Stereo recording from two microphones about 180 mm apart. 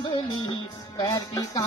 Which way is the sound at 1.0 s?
20° left (ahead or behind).